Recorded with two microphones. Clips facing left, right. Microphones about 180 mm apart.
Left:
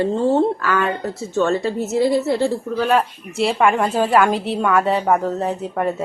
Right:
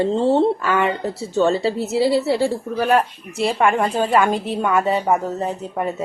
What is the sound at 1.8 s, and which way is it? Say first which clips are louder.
Speech: left 1 dB; 10° right (ahead or behind).